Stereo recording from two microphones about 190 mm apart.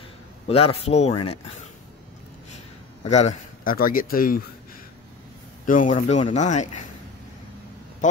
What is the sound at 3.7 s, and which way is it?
Speech, 50° left (ahead or behind).